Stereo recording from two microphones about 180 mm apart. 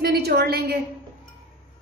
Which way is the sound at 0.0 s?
60° right (ahead or behind).